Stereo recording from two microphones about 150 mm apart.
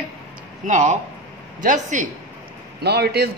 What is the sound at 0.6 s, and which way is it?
Speech, 55° right (ahead or behind).